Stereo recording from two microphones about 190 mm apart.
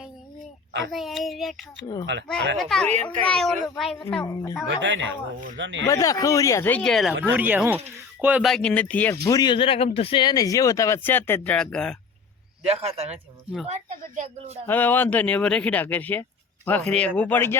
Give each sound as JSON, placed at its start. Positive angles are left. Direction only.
{"t": 0.9, "sound": "speech", "side_deg": 0}
{"t": 2.6, "sound": "speech", "side_deg": 0}
{"t": 4.2, "sound": "a woman's voice", "side_deg": 20}
{"t": 4.7, "sound": "speech", "side_deg": -70}
{"t": 5.8, "sound": "speech", "side_deg": 15}
{"t": 9.2, "sound": "speech", "side_deg": 20}
{"t": 12.6, "sound": "a woman's voice", "side_deg": -35}
{"t": 14.7, "sound": "speech", "side_deg": 10}